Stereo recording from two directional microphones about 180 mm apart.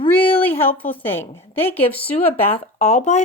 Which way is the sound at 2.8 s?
35° left (ahead or behind).